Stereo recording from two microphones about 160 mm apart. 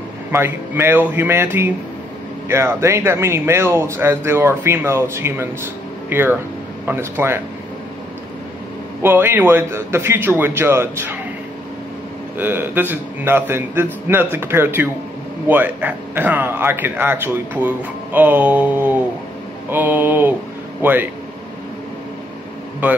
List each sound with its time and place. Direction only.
0.3 s speech: 15° right (ahead or behind)
9.0 s speech: 15° right (ahead or behind)
12.4 s speech: 10° right (ahead or behind)